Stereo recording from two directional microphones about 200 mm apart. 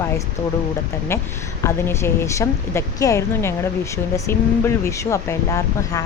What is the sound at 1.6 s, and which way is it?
Speech, 15° left (ahead or behind).